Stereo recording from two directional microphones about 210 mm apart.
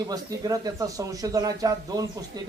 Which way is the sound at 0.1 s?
15° right (ahead or behind).